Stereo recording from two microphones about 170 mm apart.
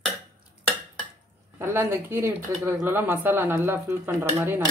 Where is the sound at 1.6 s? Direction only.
15° right (ahead or behind).